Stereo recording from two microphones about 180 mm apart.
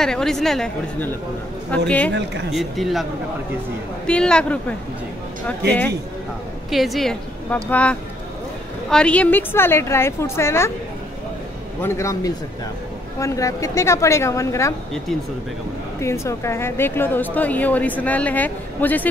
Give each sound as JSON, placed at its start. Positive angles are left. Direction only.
{"t": 0.0, "sound": "a woman's voice", "side_deg": 5}
{"t": 6.7, "sound": "a woman's voice", "side_deg": 0}
{"t": 11.8, "sound": "a woman's voice", "side_deg": 15}
{"t": 16.0, "sound": "a woman's voice", "side_deg": 15}